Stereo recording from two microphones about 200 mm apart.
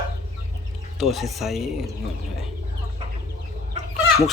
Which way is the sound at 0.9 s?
Centre (ahead or behind).